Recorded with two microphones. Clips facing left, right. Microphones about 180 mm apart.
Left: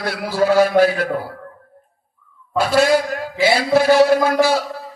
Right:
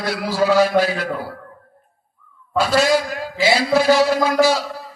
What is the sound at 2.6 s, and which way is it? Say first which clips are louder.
A man's voice: left 2 dB; 55° left (ahead or behind).